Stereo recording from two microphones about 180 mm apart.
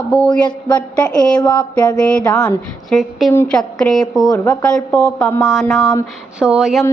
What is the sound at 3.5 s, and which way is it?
Speech, 5° left (ahead or behind).